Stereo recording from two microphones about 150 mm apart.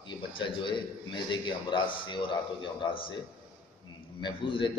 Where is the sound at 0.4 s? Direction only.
30° left (ahead or behind).